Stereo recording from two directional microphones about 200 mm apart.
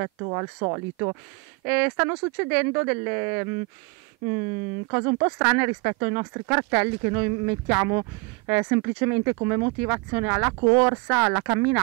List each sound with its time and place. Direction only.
0.2 s speech: 25° right (ahead or behind)
1.7 s speech: 10° right (ahead or behind)
4.9 s speech: 15° right (ahead or behind)